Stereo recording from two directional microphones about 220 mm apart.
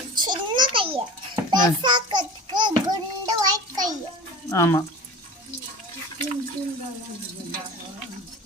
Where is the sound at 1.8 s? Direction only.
20° right (ahead or behind).